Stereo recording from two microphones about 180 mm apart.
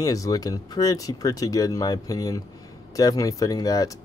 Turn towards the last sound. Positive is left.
turn(degrees=20)  # may be behind; listen again after turning